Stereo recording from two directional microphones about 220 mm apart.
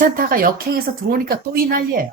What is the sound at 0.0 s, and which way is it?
Speech, 40° right (ahead or behind).